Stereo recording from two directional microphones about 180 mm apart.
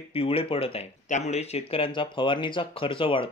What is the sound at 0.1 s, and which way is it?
Speech, 30° left (ahead or behind).